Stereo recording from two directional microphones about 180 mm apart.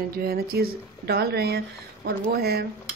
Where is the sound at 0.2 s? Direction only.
55° right (ahead or behind).